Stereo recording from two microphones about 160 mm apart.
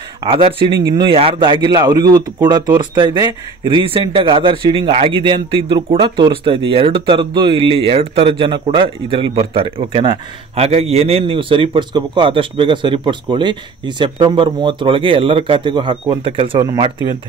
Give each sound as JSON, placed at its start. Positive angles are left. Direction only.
{"t": 0.2, "sound": "a man's voice", "side_deg": -35}